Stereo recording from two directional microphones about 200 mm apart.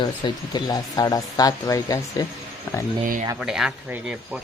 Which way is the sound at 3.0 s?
40° right (ahead or behind).